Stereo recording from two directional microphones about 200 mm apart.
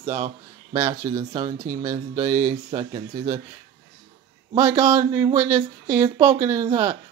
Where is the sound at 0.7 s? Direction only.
15° right (ahead or behind).